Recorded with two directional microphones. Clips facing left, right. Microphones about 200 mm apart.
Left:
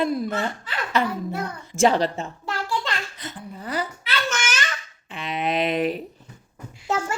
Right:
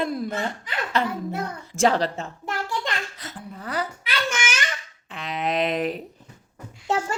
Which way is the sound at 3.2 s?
Centre (ahead or behind).